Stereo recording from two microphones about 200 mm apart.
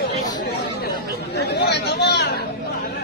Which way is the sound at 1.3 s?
55° left (ahead or behind).